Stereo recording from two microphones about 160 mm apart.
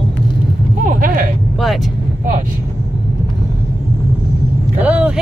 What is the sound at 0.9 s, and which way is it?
Speech, 60° right (ahead or behind).